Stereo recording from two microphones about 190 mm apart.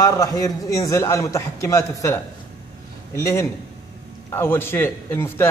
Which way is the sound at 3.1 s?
15° left (ahead or behind).